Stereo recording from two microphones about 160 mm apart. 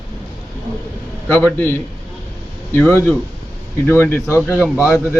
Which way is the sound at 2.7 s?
15° left (ahead or behind).